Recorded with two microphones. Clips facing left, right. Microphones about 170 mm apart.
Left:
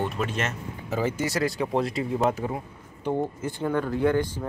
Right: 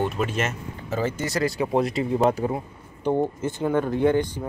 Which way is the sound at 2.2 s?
35° right (ahead or behind).